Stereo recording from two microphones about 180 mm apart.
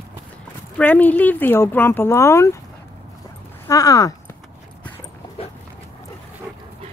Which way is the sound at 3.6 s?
20° left (ahead or behind).